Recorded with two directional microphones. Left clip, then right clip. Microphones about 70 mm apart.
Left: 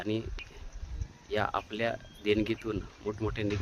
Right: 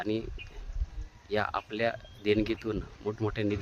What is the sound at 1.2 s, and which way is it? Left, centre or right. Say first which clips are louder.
Speech: even; right.